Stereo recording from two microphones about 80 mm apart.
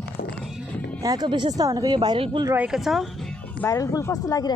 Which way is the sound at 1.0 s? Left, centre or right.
Right.